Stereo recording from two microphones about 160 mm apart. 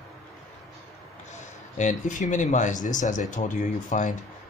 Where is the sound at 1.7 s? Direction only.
50° left (ahead or behind).